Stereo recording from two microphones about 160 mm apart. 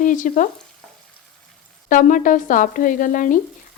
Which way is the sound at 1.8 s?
55° left (ahead or behind).